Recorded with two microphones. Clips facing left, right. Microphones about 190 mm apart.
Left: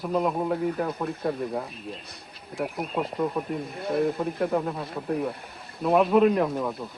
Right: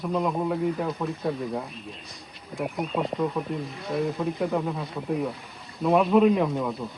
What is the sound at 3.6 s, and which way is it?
Speech, 55° left (ahead or behind).